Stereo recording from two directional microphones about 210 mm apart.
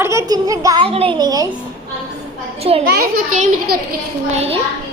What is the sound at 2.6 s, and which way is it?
Speech, 30° right (ahead or behind).